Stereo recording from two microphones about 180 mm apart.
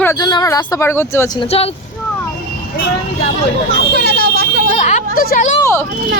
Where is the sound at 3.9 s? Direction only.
60° right (ahead or behind).